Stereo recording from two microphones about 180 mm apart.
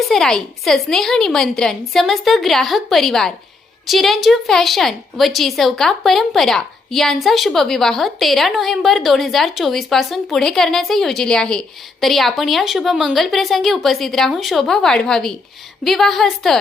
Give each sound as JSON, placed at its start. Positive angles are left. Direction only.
{"t": 0.1, "sound": "speech", "side_deg": 5}